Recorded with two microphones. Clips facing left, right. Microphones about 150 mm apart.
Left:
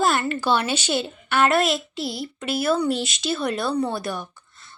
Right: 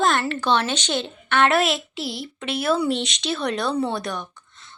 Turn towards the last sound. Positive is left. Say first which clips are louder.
# right 1 dB
turn(degrees=5)  # may be behind; listen again after turning